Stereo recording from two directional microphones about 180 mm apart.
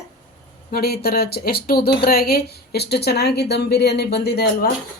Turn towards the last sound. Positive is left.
turn(degrees=65)  # may be behind; listen again after turning